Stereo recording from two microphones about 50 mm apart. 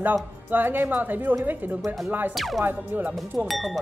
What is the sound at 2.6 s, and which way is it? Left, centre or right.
Speech, right.